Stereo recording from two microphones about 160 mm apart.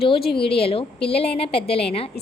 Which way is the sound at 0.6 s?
35° left (ahead or behind).